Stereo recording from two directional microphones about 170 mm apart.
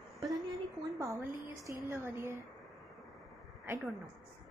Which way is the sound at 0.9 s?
15° right (ahead or behind).